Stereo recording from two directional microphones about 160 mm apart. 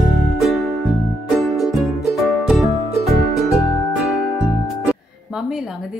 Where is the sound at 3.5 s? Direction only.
20° left (ahead or behind).